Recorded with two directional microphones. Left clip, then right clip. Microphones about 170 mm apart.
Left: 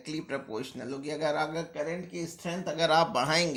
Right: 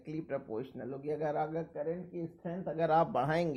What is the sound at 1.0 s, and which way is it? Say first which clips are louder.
Speech: left 4 dB; 40° right (ahead or behind).